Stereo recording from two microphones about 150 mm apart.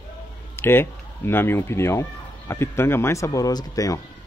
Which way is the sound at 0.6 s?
15° left (ahead or behind).